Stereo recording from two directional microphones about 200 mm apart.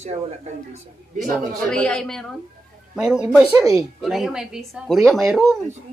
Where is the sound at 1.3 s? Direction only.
5° left (ahead or behind).